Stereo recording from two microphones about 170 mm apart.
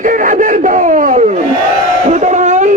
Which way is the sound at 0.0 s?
50° right (ahead or behind).